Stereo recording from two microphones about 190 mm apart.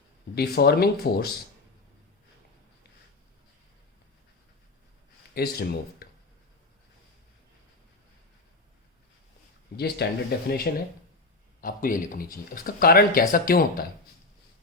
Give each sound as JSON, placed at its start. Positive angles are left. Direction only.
{"t": 0.3, "sound": "speech", "side_deg": 55}
{"t": 5.3, "sound": "speech", "side_deg": 55}
{"t": 9.7, "sound": "speech", "side_deg": 55}